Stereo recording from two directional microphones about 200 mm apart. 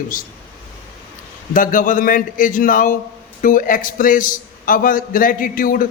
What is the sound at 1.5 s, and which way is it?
A man's voice, 40° left (ahead or behind).